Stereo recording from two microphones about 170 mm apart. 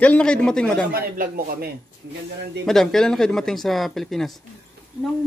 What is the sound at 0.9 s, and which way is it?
Speech, 60° right (ahead or behind).